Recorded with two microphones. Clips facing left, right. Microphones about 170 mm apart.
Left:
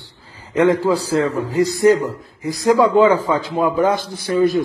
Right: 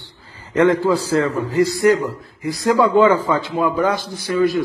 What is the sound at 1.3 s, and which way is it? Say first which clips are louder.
A man's voice: even; 10° left (ahead or behind).